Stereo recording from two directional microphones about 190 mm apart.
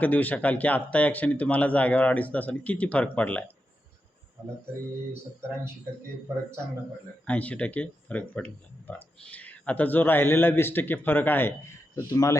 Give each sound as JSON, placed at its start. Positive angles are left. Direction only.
{"t": 0.0, "sound": "speech", "side_deg": 10}
{"t": 5.1, "sound": "speech", "side_deg": -15}
{"t": 7.3, "sound": "speech", "side_deg": 5}